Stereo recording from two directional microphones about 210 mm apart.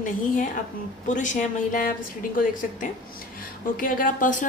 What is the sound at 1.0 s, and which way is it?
A woman's voice, 35° left (ahead or behind).